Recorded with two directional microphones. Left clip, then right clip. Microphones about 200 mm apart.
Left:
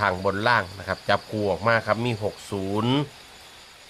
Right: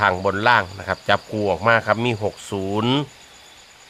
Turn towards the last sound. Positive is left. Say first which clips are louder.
# right 4 dB
turn(degrees=-25)  # may be behind; listen again after turning